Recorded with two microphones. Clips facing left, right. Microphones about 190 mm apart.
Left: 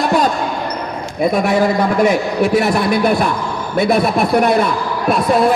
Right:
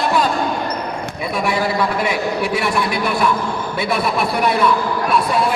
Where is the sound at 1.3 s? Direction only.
45° left (ahead or behind).